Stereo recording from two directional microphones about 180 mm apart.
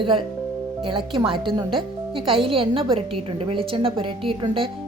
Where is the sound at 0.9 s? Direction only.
30° right (ahead or behind).